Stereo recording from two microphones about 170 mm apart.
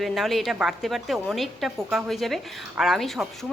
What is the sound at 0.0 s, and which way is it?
Speech, centre (ahead or behind).